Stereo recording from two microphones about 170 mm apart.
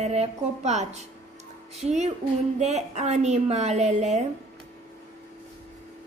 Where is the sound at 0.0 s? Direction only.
40° right (ahead or behind).